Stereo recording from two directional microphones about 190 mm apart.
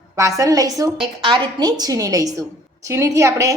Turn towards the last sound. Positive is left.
turn(degrees=-15)  # may be behind; listen again after turning